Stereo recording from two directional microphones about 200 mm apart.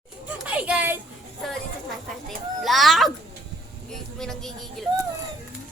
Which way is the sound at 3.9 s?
Centre (ahead or behind).